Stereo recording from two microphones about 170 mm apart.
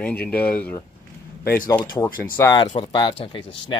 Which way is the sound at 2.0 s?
15° left (ahead or behind).